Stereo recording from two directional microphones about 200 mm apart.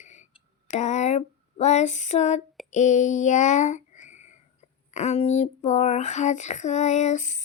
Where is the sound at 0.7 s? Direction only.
35° left (ahead or behind).